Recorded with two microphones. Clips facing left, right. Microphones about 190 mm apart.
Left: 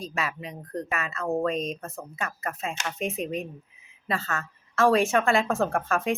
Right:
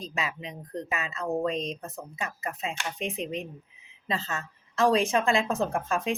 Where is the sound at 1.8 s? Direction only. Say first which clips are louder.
Left 2 dB; 15° right (ahead or behind).